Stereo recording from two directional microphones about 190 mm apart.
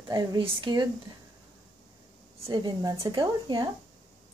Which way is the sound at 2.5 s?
20° right (ahead or behind).